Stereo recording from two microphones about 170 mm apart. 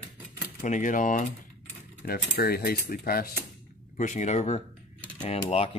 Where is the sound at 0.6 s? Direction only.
50° left (ahead or behind).